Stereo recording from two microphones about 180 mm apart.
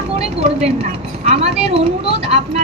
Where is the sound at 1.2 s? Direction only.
35° right (ahead or behind).